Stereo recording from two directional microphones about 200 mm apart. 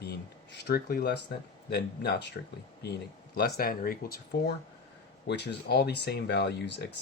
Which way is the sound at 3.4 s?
50° left (ahead or behind).